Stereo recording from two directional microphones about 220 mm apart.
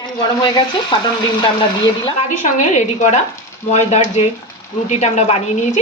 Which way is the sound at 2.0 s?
30° left (ahead or behind).